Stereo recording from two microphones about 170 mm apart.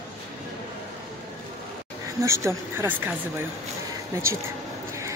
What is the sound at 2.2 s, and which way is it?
Speech, 15° right (ahead or behind).